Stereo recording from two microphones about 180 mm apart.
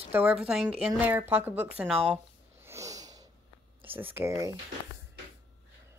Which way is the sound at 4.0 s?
10° right (ahead or behind).